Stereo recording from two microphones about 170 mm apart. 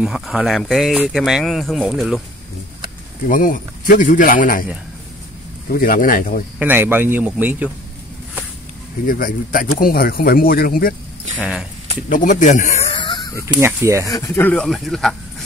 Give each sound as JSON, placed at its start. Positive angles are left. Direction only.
{"t": 0.0, "sound": "speech", "side_deg": -5}
{"t": 3.3, "sound": "speech", "side_deg": 55}
{"t": 5.7, "sound": "speech", "side_deg": 55}
{"t": 6.6, "sound": "speech", "side_deg": -10}
{"t": 9.0, "sound": "speech", "side_deg": 55}
{"t": 11.3, "sound": "speech", "side_deg": -5}
{"t": 12.1, "sound": "speech", "side_deg": 50}
{"t": 12.9, "sound": "a sound", "side_deg": 25}
{"t": 13.6, "sound": "speech", "side_deg": -15}
{"t": 14.0, "sound": "speech", "side_deg": 20}